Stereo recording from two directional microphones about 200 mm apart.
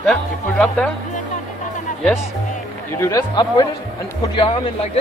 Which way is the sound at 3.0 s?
15° left (ahead or behind).